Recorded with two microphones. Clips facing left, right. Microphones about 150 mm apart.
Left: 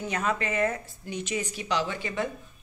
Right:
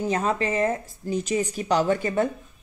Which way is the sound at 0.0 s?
35° right (ahead or behind).